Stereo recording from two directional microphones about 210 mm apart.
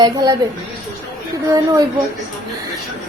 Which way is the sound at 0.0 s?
20° right (ahead or behind).